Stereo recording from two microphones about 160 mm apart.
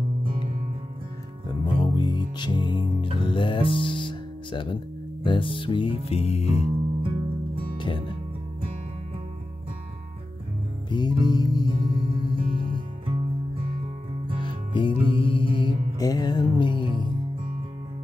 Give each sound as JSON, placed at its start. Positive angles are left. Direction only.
{"t": 0.2, "sound": "music", "side_deg": -35}
{"t": 1.8, "sound": "music", "side_deg": 30}
{"t": 7.7, "sound": "music", "side_deg": 30}
{"t": 10.9, "sound": "music", "side_deg": 25}
{"t": 11.7, "sound": "music", "side_deg": -35}
{"t": 14.4, "sound": "music", "side_deg": 30}